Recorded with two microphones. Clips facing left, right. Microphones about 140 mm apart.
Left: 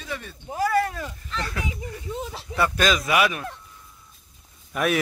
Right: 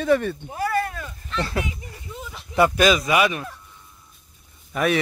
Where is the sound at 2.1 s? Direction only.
30° left (ahead or behind).